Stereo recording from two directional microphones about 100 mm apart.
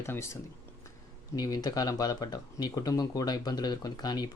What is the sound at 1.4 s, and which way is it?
Speech, 40° left (ahead or behind).